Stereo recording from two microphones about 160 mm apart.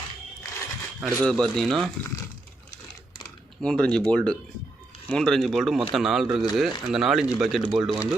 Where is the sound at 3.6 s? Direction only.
5° left (ahead or behind).